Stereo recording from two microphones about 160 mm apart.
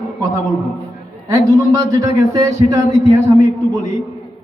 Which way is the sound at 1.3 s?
20° right (ahead or behind).